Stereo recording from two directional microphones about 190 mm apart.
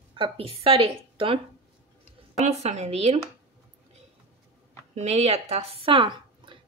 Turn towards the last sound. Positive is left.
turn(degrees=-25)  # may be behind; listen again after turning